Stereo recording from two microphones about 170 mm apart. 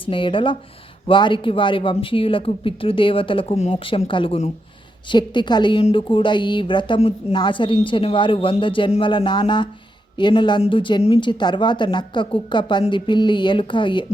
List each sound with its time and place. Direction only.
0.0 s a woman's voice: 30° left (ahead or behind)